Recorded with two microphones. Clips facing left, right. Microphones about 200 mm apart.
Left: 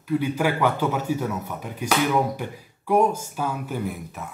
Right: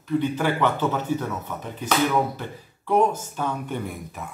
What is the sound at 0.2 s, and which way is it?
A man's voice, 10° left (ahead or behind).